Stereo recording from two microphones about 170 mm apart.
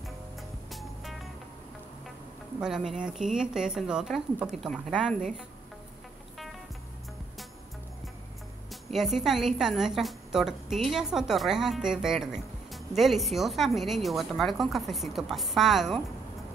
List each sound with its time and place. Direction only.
0.7 s music: centre (ahead or behind)
2.6 s a woman's voice: centre (ahead or behind)
8.9 s a woman's voice: centre (ahead or behind)